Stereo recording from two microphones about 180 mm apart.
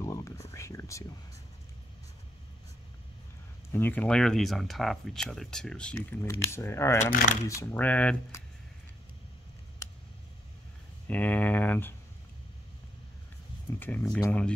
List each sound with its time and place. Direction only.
0.0 s a sound: 15° left (ahead or behind)
3.7 s speech: 10° left (ahead or behind)
7.1 s speech: 50° left (ahead or behind)
7.4 s speech: 15° left (ahead or behind)
11.1 s speech: 10° left (ahead or behind)
13.7 s speech: 10° left (ahead or behind)